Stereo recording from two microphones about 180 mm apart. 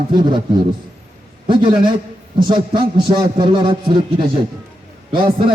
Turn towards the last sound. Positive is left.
turn(degrees=-30)  # may be behind; listen again after turning